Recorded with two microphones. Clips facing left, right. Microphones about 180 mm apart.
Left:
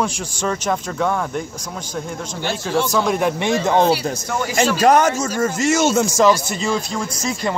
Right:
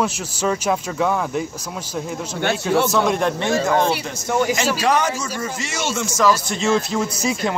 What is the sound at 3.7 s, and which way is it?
Speech, 30° left (ahead or behind).